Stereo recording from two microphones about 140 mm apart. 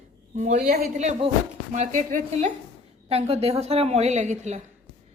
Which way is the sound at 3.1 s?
45° right (ahead or behind).